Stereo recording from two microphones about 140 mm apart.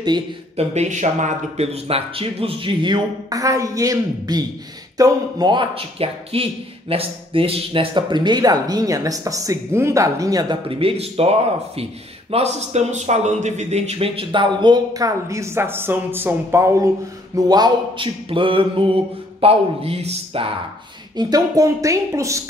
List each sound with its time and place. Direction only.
0.6 s speech: 55° right (ahead or behind); by 10.6 s 25° right (ahead or behind)
10.7 s a man's voice: 40° right (ahead or behind)
21.2 s speech: 25° right (ahead or behind)